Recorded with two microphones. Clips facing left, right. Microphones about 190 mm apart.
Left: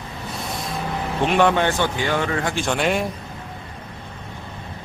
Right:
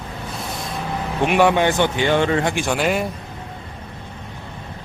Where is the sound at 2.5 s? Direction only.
5° right (ahead or behind).